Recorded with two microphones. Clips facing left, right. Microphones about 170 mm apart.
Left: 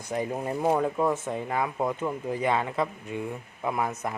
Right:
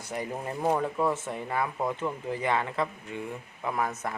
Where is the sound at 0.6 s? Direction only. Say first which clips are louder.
Left 2 dB; 10° left (ahead or behind).